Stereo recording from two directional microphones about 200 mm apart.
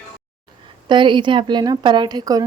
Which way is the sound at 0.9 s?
25° right (ahead or behind).